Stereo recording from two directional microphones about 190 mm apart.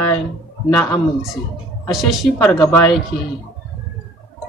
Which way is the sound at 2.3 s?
15° left (ahead or behind).